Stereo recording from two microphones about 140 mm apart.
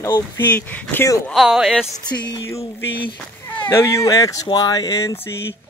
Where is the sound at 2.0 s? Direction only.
30° left (ahead or behind).